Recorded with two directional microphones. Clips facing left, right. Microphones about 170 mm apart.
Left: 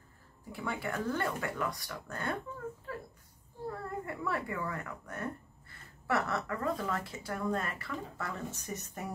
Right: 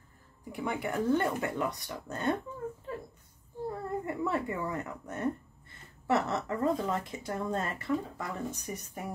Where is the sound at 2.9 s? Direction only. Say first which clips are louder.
Right 2 dB; 20° right (ahead or behind).